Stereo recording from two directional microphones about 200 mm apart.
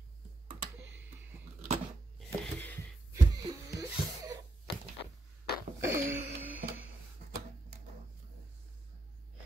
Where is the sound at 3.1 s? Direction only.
20° right (ahead or behind).